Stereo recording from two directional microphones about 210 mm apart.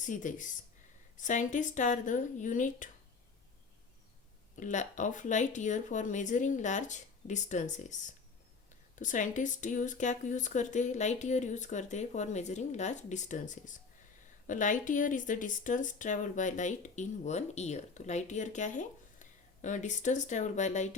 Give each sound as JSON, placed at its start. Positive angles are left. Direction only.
{"t": 0.0, "sound": "speech", "side_deg": 40}
{"t": 4.6, "sound": "speech", "side_deg": 35}